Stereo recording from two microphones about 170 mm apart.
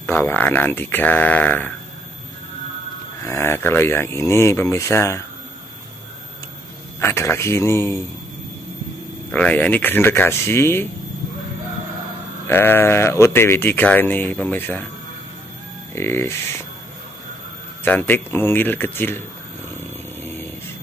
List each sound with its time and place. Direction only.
0.0 s speech: 15° left (ahead or behind)
3.2 s speech: 15° left (ahead or behind)
7.0 s speech: 15° left (ahead or behind)
9.3 s speech: 5° left (ahead or behind)
12.4 s speech: 15° left (ahead or behind)
15.9 s speech: 15° left (ahead or behind)
17.8 s speech: 10° left (ahead or behind)